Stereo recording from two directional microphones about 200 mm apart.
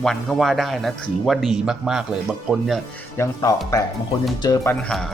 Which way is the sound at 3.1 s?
15° left (ahead or behind).